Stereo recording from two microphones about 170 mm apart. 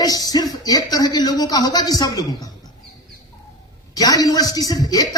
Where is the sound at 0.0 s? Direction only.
20° left (ahead or behind).